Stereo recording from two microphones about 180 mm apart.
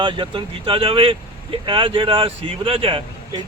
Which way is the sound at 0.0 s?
25° right (ahead or behind).